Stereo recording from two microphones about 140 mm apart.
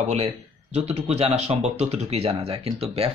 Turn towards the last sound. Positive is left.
turn(degrees=-45)  # may be behind; listen again after turning